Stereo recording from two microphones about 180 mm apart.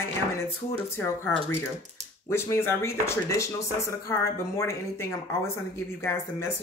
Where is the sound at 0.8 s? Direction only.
15° left (ahead or behind).